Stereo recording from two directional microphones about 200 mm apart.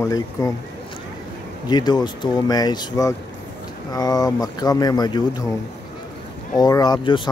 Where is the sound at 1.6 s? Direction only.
20° left (ahead or behind).